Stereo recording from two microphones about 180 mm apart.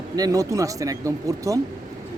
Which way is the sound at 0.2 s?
20° right (ahead or behind).